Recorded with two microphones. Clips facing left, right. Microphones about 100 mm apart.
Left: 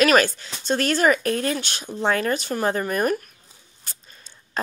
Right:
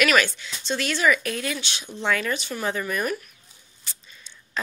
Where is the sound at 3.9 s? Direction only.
45° left (ahead or behind).